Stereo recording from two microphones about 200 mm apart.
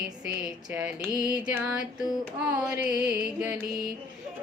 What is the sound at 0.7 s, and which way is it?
Music, 10° right (ahead or behind).